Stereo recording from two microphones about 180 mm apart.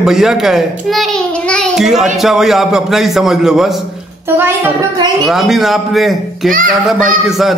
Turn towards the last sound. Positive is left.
turn(degrees=0)  # may be behind; listen again after turning